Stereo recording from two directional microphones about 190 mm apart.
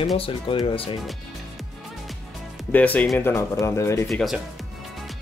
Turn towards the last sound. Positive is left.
turn(degrees=0)  # may be behind; listen again after turning